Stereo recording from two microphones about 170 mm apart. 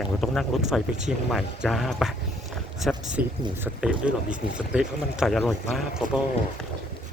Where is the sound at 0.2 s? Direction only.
Centre (ahead or behind).